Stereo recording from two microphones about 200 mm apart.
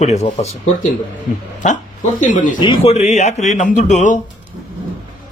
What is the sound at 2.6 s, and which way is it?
Speech, 30° left (ahead or behind).